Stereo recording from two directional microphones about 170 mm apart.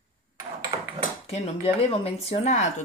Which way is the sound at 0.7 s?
35° right (ahead or behind).